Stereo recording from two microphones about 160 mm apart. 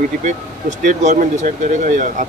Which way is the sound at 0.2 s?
50° right (ahead or behind).